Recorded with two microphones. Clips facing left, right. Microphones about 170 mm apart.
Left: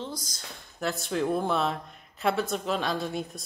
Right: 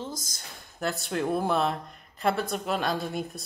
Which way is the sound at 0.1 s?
45° right (ahead or behind).